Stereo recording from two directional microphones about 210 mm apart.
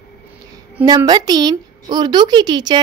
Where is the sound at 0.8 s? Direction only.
20° right (ahead or behind).